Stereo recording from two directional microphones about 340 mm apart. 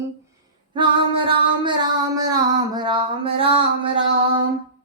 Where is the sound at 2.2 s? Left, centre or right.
Centre.